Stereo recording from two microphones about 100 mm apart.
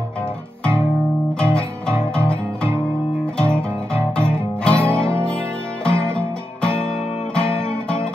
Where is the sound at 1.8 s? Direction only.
25° right (ahead or behind).